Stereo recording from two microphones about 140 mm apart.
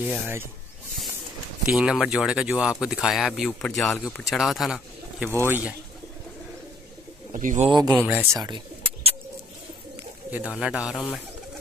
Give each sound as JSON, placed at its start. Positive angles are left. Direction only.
{"t": 0.0, "sound": "speech", "side_deg": -5}
{"t": 1.7, "sound": "speech", "side_deg": -5}
{"t": 5.3, "sound": "speech", "side_deg": -15}
{"t": 7.3, "sound": "a man's voice", "side_deg": -60}
{"t": 7.7, "sound": "speech", "side_deg": -30}
{"t": 8.1, "sound": "speech", "side_deg": -15}
{"t": 8.4, "sound": "bird", "side_deg": -35}
{"t": 10.3, "sound": "speech", "side_deg": -5}